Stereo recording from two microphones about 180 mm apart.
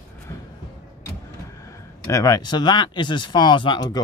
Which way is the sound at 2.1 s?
20° left (ahead or behind).